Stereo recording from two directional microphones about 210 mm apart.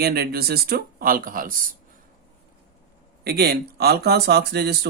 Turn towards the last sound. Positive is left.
turn(degrees=-50)  # may be behind; listen again after turning